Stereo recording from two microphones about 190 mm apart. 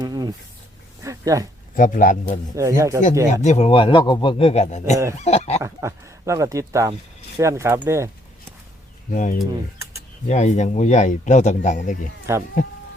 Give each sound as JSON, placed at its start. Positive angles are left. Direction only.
{"t": 0.0, "sound": "a sound", "side_deg": -20}
{"t": 1.7, "sound": "speech", "side_deg": 45}
{"t": 2.6, "sound": "speech", "side_deg": -15}
{"t": 3.4, "sound": "a man's voice", "side_deg": 35}
{"t": 5.6, "sound": "speech", "side_deg": -15}
{"t": 9.1, "sound": "speech", "side_deg": 40}